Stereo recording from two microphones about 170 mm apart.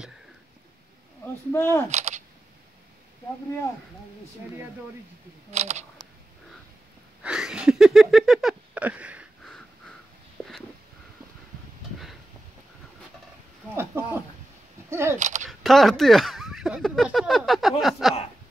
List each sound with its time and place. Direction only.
1.5 s speech: 15° left (ahead or behind)
1.9 s camera: 40° right (ahead or behind)
5.5 s speech: 40° right (ahead or behind)
7.2 s a sound: 5° right (ahead or behind)
9.4 s a sound: 5° left (ahead or behind)
13.7 s a sound: 15° right (ahead or behind)
14.9 s single-lens reflex camera: 15° right (ahead or behind)
15.1 s single-lens reflex camera: 45° right (ahead or behind)
15.6 s speech: centre (ahead or behind)